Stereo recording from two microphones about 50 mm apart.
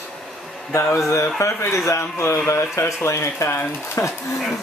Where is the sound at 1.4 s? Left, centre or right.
Left.